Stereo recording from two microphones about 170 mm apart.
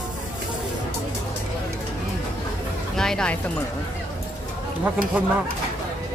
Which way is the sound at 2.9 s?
5° left (ahead or behind).